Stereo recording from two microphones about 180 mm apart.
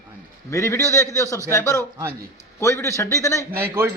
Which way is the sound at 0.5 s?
15° left (ahead or behind).